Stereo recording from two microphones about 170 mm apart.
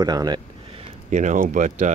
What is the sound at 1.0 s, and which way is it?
Speech, 45° right (ahead or behind).